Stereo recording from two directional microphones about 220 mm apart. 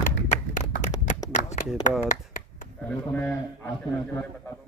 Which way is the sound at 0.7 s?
35° left (ahead or behind).